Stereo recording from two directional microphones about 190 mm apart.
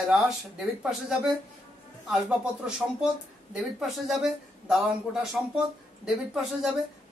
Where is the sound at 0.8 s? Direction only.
Centre (ahead or behind).